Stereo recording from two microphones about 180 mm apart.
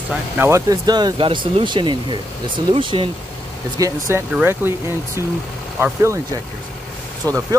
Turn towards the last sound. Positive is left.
turn(degrees=-20)  # may be behind; listen again after turning